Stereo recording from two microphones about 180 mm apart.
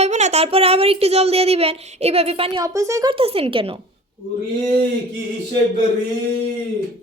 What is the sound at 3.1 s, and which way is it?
Speech, 30° right (ahead or behind).